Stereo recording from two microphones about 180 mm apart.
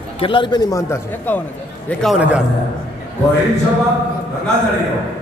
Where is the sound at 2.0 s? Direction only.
5° right (ahead or behind).